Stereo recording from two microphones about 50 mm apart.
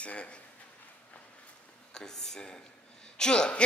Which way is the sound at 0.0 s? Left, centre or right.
Left.